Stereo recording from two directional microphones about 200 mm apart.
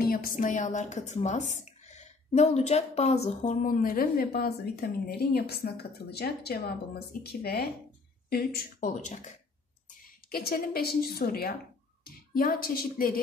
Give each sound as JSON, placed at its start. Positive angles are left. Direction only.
{"t": 0.0, "sound": "speech", "side_deg": 45}
{"t": 10.3, "sound": "speech", "side_deg": 50}